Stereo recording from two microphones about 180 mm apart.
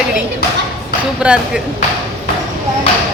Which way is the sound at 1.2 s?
5° right (ahead or behind).